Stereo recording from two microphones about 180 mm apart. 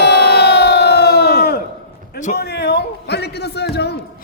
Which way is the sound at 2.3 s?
65° left (ahead or behind).